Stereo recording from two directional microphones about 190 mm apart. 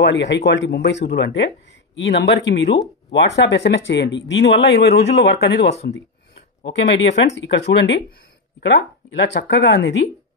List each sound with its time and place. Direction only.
0.0 s speech: 70° left (ahead or behind)
6.8 s speech: 70° left (ahead or behind)